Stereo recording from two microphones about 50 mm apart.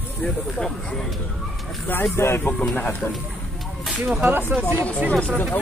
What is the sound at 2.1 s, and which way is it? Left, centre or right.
Speech, left.